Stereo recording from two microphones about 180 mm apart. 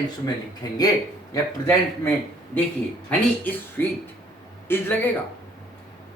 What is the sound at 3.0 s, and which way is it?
A man's voice, 10° left (ahead or behind).